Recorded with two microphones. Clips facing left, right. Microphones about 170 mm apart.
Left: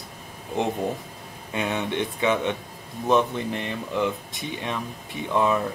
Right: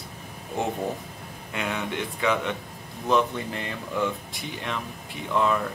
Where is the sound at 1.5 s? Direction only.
25° left (ahead or behind).